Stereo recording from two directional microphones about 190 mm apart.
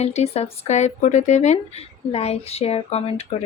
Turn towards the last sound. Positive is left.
turn(degrees=35)  # may be behind; listen again after turning